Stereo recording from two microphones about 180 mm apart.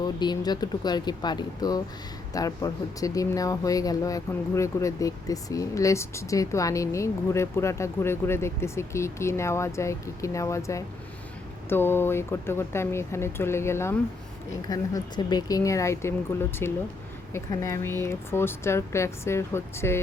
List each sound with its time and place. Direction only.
0.0 s speech: 25° left (ahead or behind)